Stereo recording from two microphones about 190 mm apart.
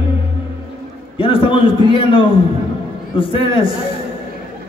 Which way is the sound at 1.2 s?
25° left (ahead or behind).